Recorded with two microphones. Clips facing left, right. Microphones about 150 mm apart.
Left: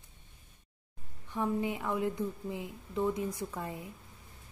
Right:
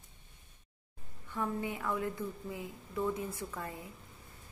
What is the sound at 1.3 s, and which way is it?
A woman's voice, 20° left (ahead or behind).